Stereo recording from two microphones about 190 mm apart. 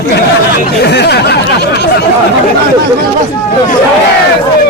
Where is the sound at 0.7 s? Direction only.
60° left (ahead or behind).